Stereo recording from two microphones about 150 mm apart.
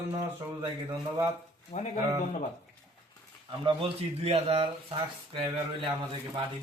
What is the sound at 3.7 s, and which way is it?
A man's voice, 40° right (ahead or behind).